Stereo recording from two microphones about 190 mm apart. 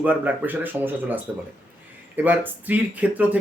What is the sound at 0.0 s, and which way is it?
Speech, 10° right (ahead or behind).